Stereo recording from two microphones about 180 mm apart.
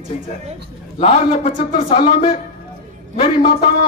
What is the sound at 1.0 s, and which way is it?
A man's voice, 35° left (ahead or behind).